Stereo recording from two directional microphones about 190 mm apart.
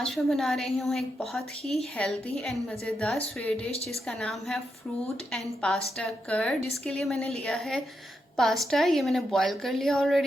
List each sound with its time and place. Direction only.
0.0 s a woman's voice: centre (ahead or behind)